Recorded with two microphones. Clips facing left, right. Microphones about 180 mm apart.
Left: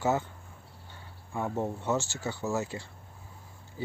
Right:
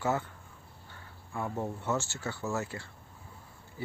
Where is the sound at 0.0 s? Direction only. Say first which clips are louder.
Left 3 dB; 20° left (ahead or behind).